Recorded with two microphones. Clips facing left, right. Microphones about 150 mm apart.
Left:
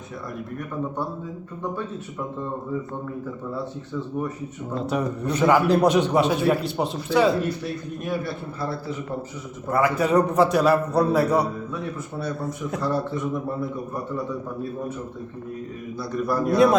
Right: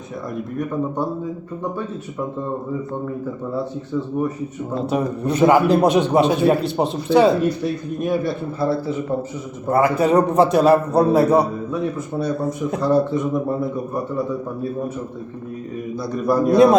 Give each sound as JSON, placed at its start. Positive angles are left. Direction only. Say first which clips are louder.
{"t": 4.7, "sound": "a man's voice", "louder": "right 3 dB", "side_deg": -20}
{"t": 16.1, "sound": "a man's voice", "louder": "right 5 dB", "side_deg": -15}